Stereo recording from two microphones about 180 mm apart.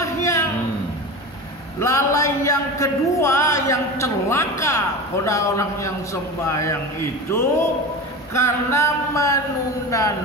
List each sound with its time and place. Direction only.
0.0 s a sound: 15° left (ahead or behind)
1.8 s speech: 15° left (ahead or behind)
8.3 s speech: 15° left (ahead or behind)